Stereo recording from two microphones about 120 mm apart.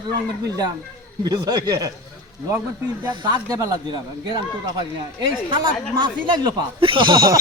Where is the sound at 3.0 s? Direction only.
35° right (ahead or behind).